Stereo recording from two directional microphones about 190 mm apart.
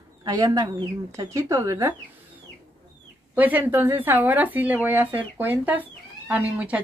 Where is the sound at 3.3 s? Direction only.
10° right (ahead or behind).